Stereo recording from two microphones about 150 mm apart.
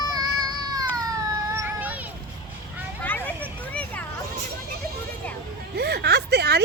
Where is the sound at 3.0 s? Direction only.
10° left (ahead or behind).